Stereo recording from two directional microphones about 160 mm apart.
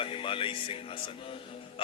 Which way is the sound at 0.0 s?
35° left (ahead or behind).